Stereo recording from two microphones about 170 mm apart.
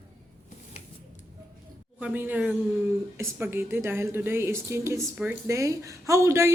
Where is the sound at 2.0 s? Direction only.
10° right (ahead or behind).